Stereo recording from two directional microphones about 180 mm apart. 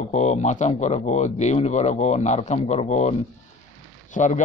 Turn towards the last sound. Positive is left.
turn(degrees=45)  # may be behind; listen again after turning